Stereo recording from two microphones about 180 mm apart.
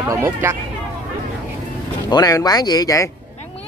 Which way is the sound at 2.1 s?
20° left (ahead or behind).